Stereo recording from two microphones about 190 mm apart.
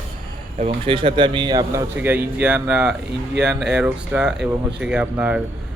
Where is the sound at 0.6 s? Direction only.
25° right (ahead or behind).